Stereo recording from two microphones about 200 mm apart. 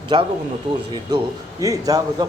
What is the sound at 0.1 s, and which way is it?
Speech, 25° right (ahead or behind).